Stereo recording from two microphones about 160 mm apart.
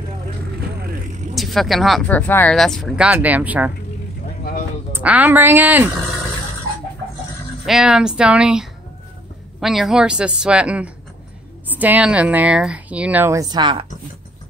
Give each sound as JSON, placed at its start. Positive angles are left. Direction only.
{"t": 0.7, "sound": "vehicle", "side_deg": -70}
{"t": 1.3, "sound": "a woman's voice", "side_deg": 0}
{"t": 4.4, "sound": "a sound", "side_deg": 60}
{"t": 4.9, "sound": "speech", "side_deg": -10}
{"t": 7.6, "sound": "a woman's voice", "side_deg": -5}